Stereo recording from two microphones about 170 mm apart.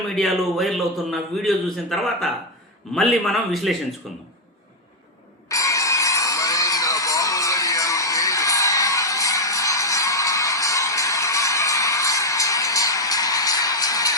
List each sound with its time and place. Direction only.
0.2 s a man's voice: centre (ahead or behind)
5.5 s music: 20° left (ahead or behind)